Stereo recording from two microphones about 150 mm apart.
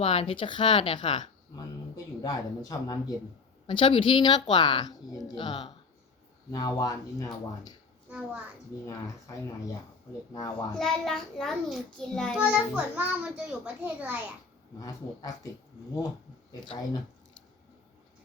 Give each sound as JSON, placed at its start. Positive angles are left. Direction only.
{"t": 0.0, "sound": "speech", "side_deg": 40}
{"t": 10.3, "sound": "speech", "side_deg": 25}
{"t": 10.8, "sound": "a child's voice", "side_deg": 0}
{"t": 12.4, "sound": "a child's voice", "side_deg": -10}
{"t": 14.8, "sound": "speech", "side_deg": 25}
{"t": 16.6, "sound": "speech", "side_deg": 30}